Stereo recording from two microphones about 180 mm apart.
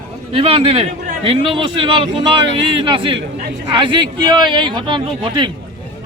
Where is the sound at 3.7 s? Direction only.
25° right (ahead or behind).